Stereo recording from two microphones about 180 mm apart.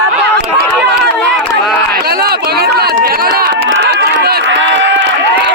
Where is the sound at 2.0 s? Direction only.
60° right (ahead or behind); by 5.5 s 75° right (ahead or behind).